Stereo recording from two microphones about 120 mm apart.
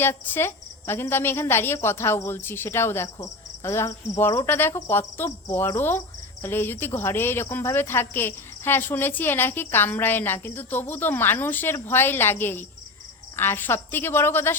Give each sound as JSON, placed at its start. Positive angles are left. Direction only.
{"t": 0.0, "sound": "a woman's voice", "side_deg": 20}